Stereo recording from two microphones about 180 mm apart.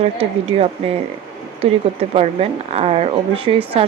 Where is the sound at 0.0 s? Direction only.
35° right (ahead or behind).